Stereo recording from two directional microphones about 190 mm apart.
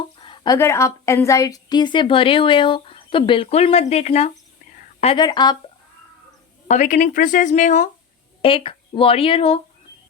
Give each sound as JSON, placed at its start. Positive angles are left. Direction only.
{"t": 0.2, "sound": "a woman's voice", "side_deg": 20}
{"t": 5.1, "sound": "a woman's voice", "side_deg": 20}
{"t": 6.7, "sound": "speech", "side_deg": 40}
{"t": 8.4, "sound": "speech", "side_deg": 30}